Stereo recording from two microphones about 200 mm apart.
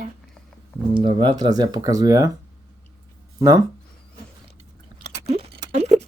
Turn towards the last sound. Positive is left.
turn(degrees=-30)  # may be behind; listen again after turning